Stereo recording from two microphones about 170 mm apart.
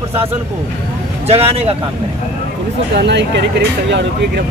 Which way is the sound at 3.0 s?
85° right.